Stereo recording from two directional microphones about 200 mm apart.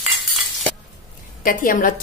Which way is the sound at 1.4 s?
45° left (ahead or behind).